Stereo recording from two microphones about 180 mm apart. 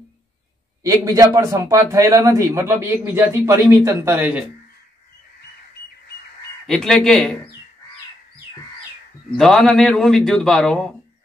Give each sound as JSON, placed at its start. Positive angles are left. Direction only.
{"t": 0.8, "sound": "a man's voice", "side_deg": -20}
{"t": 6.6, "sound": "a man's voice", "side_deg": 5}
{"t": 9.4, "sound": "a man's voice", "side_deg": 0}